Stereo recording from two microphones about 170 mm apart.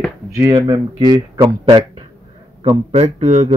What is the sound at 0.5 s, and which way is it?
Speech, 25° right (ahead or behind).